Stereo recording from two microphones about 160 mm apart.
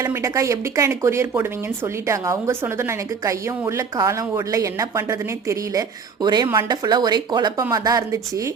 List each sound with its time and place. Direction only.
0.0 s speech: 20° right (ahead or behind)